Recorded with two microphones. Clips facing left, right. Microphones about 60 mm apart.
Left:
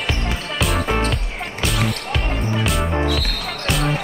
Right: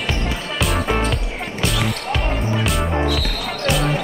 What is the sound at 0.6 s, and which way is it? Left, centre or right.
Music, centre.